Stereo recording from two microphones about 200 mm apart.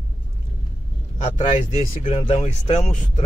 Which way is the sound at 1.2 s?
35° left (ahead or behind).